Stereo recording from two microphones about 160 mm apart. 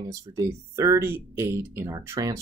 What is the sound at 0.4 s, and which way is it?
Speech, 20° right (ahead or behind).